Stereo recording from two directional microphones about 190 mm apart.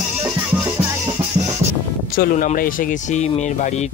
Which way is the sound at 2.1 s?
45° left (ahead or behind).